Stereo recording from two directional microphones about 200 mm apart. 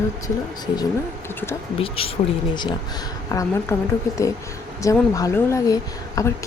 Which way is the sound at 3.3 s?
15° left (ahead or behind).